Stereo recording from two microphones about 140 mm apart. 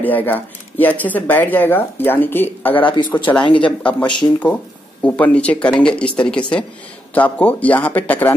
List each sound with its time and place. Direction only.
0.0 s speech: 15° left (ahead or behind)
2.8 s speech: 35° left (ahead or behind)
3.5 s speech: 10° left (ahead or behind)
4.0 s speech: 35° left (ahead or behind)
5.0 s speech: 10° left (ahead or behind)